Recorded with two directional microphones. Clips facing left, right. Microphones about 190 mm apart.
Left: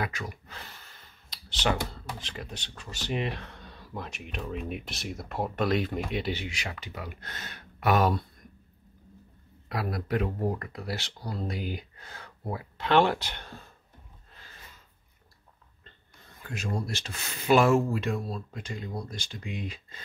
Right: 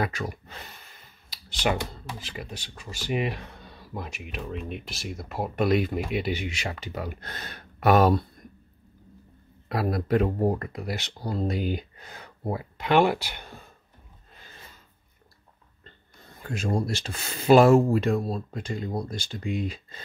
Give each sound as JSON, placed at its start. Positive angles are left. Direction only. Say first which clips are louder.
{"t": 0.0, "sound": "speech", "louder": "right 5 dB", "side_deg": -35}
{"t": 1.3, "sound": "speech", "louder": "right 2 dB", "side_deg": -10}
{"t": 6.5, "sound": "speech", "louder": "right 5 dB", "side_deg": -30}
{"t": 9.7, "sound": "speech", "louder": "right 6 dB", "side_deg": -30}
{"t": 10.6, "sound": "speech", "louder": "right 3 dB", "side_deg": -15}
{"t": 16.7, "sound": "speech", "louder": "right 7 dB", "side_deg": -30}